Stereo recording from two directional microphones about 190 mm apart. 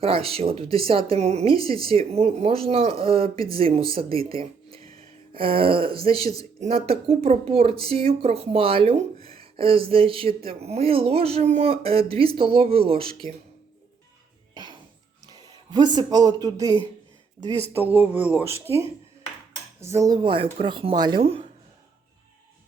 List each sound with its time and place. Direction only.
0.0 s speech: 30° right (ahead or behind)
14.5 s music: 25° right (ahead or behind)
15.3 s speech: 20° right (ahead or behind)
19.8 s speech: 15° right (ahead or behind)